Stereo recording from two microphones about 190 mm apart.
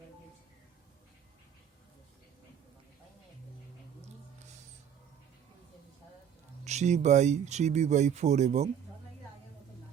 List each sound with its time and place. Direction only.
6.7 s speech: 35° right (ahead or behind)